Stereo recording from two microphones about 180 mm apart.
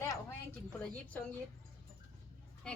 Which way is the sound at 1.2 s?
10° left (ahead or behind).